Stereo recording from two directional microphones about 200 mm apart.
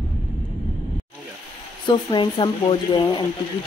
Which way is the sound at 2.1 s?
25° left (ahead or behind).